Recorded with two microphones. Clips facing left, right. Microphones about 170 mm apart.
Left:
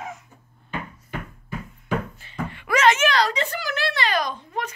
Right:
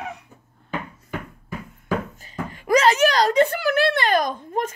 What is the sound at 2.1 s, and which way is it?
Speech, 40° right (ahead or behind).